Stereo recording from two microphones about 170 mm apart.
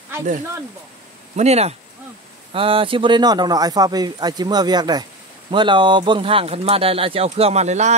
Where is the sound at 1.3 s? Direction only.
40° right (ahead or behind).